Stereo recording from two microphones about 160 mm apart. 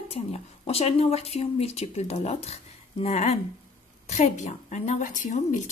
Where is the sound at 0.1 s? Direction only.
40° left (ahead or behind).